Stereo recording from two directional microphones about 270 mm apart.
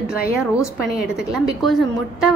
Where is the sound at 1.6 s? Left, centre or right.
Centre.